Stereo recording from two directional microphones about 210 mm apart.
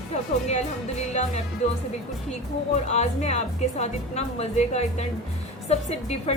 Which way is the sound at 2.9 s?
30° left (ahead or behind).